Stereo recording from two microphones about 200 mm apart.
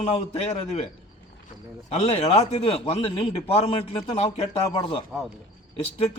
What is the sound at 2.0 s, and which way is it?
Speech, 35° left (ahead or behind).